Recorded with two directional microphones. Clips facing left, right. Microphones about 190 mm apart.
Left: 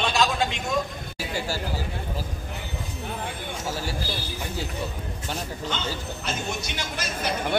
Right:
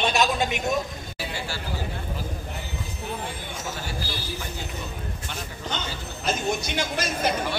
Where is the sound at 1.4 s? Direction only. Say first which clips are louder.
Left 7 dB; 40° left (ahead or behind).